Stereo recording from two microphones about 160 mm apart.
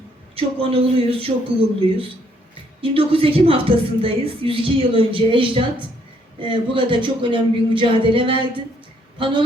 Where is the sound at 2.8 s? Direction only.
35° right (ahead or behind).